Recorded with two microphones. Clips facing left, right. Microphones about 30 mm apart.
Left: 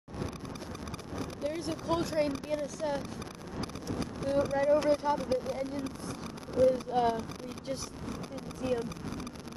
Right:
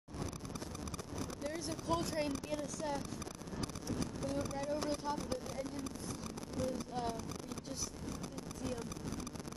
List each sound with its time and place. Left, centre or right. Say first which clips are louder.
1.1 s speech: left 7 dB; left
6.7 s speech: left 11 dB; left